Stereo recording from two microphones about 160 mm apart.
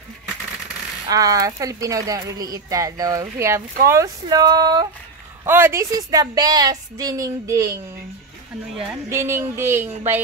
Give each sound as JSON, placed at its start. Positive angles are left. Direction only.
{"t": 1.0, "sound": "speech", "side_deg": -20}
{"t": 5.4, "sound": "speech", "side_deg": -15}
{"t": 9.1, "sound": "a sound", "side_deg": -15}